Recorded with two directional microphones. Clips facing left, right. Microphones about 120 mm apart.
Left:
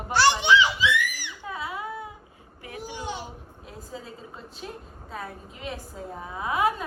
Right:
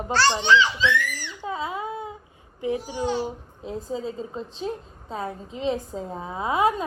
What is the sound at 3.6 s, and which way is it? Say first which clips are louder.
A woman's voice: right 11 dB; 25° right (ahead or behind).